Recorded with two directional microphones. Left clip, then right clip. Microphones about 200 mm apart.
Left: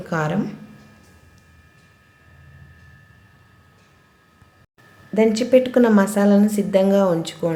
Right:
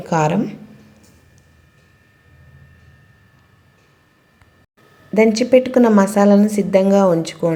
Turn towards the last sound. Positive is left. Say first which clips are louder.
# right 4 dB
turn(degrees=-15)  # may be behind; listen again after turning